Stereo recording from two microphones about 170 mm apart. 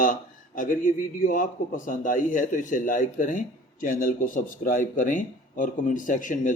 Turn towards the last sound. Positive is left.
turn(degrees=50)  # may be behind; listen again after turning